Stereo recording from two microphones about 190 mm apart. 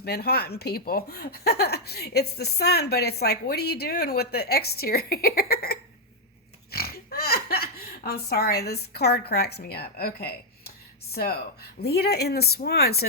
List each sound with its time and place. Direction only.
0.0 s speech: 55° left (ahead or behind)